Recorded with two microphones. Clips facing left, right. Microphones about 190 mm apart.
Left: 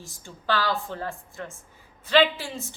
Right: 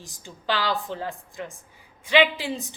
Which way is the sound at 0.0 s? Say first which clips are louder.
Right 1 dB; 15° right (ahead or behind).